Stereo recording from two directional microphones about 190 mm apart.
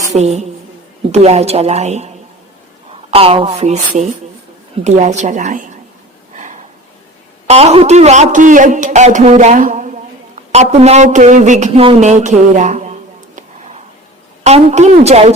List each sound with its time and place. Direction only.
0.1 s a man's voice: 35° right (ahead or behind)
3.1 s a woman's voice: 30° right (ahead or behind)
6.3 s a sound: 40° right (ahead or behind)
7.4 s a man's voice: 35° right (ahead or behind)
14.4 s a man's voice: 35° right (ahead or behind)